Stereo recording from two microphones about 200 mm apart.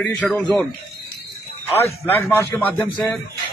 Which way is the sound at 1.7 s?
10° left (ahead or behind).